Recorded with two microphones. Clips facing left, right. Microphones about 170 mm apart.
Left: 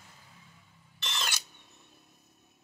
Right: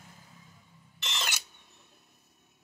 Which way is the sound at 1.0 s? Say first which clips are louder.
Even; 15° right (ahead or behind).